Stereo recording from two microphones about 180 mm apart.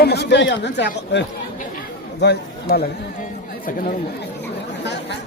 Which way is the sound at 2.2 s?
65° left (ahead or behind).